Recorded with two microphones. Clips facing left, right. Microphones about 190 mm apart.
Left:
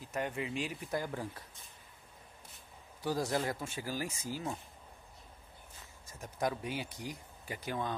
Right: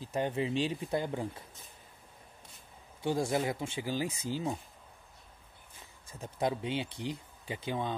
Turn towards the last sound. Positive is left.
turn(degrees=-20)  # may be behind; listen again after turning